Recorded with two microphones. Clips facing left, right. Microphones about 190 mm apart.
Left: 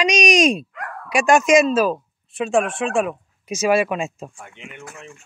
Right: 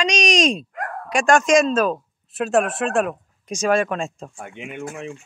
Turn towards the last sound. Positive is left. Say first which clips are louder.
# right 7 dB
turn(degrees=-55)  # may be behind; listen again after turning